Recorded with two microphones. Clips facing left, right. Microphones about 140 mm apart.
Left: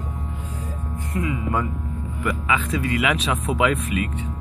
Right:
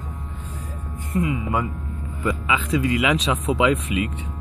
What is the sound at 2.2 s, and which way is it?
Speech, 20° right (ahead or behind).